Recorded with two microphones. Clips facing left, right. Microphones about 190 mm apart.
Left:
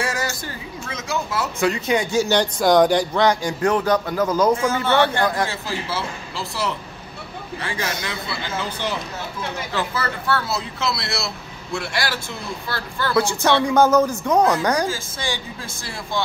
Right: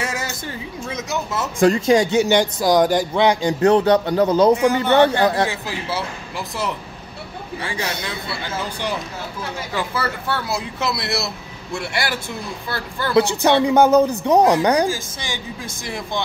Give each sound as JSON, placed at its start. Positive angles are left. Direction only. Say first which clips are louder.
{"t": 0.0, "sound": "a sound", "louder": "left 1 dB", "side_deg": -20}
{"t": 1.0, "sound": "a man's voice", "louder": "left 2 dB", "side_deg": -20}
{"t": 2.6, "sound": "a man's voice", "louder": "left 1 dB", "side_deg": -5}
{"t": 4.6, "sound": "a woman's voice", "louder": "right 4 dB", "side_deg": -15}
{"t": 9.8, "sound": "a woman's voice", "louder": "right 2 dB", "side_deg": -10}